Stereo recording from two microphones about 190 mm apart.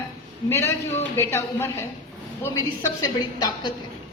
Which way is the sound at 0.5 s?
15° left (ahead or behind).